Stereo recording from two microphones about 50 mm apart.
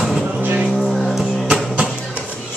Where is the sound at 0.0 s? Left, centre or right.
Centre.